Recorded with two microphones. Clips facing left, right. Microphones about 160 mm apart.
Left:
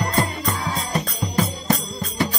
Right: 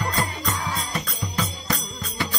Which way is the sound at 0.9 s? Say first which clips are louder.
Left 5 dB; 45° left (ahead or behind).